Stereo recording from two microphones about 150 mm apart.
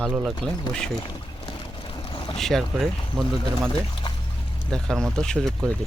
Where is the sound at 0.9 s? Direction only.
30° left (ahead or behind).